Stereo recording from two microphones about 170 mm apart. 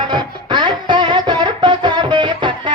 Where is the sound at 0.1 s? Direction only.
25° right (ahead or behind).